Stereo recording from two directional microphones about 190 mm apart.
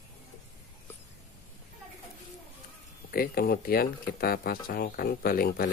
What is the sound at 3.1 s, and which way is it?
Speech, 50° left (ahead or behind).